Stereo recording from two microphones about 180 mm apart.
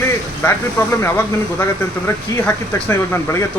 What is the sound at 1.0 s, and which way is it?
Speech, 15° left (ahead or behind).